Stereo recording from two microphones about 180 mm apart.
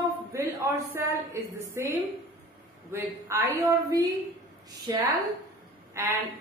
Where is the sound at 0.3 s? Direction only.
15° right (ahead or behind).